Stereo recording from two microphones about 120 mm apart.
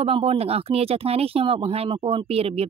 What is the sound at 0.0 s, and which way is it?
Speech, 55° right (ahead or behind).